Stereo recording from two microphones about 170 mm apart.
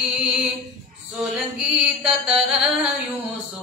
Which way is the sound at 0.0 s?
Centre (ahead or behind).